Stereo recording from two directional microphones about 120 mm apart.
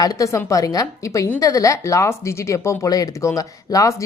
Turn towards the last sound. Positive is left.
turn(degrees=30)  # may be behind; listen again after turning